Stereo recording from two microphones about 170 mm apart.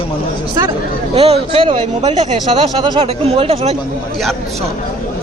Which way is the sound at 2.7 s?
30° right (ahead or behind).